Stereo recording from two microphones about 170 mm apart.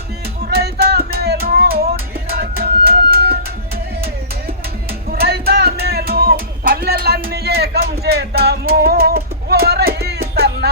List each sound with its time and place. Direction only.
0.5 s music: 70° right (ahead or behind)
5.2 s music: 70° right (ahead or behind)